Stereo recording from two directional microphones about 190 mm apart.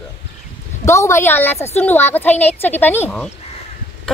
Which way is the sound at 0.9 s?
15° left (ahead or behind).